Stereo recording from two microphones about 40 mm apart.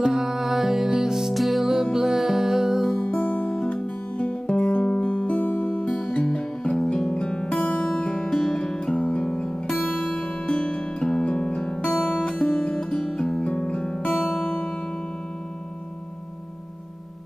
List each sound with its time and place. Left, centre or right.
0.0 s music: centre
1.3 s music: centre
3.0 s music: left
5.2 s music: left
5.9 s music: left
7.2 s music: left
7.8 s guitar: left
8.9 s music: left
11.5 s guitar: left
12.0 s music: left
12.3 s music: left
12.9 s guitar: centre
14.4 s music: left